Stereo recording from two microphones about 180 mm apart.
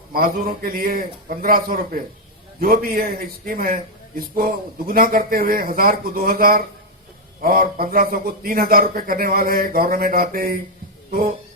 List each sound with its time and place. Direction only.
0.1 s a man's voice: 55° right (ahead or behind)